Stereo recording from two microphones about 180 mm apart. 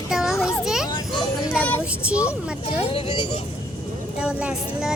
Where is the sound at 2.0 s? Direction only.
5° right (ahead or behind).